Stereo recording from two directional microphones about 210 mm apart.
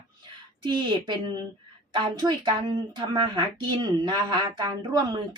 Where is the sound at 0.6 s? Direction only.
20° right (ahead or behind).